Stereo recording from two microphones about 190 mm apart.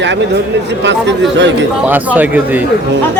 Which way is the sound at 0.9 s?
70° right (ahead or behind).